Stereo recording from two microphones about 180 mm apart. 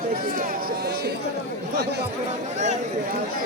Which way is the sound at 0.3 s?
60° right (ahead or behind).